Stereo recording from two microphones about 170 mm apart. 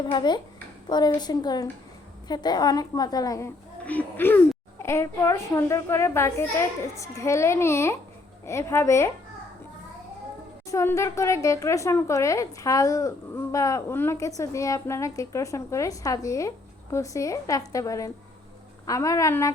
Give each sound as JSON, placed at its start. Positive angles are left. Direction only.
{"t": 0.0, "sound": "a woman's voice", "side_deg": 25}
{"t": 10.7, "sound": "a woman's voice", "side_deg": 15}